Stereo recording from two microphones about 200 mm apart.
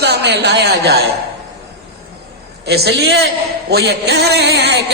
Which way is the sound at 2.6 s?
55° right (ahead or behind).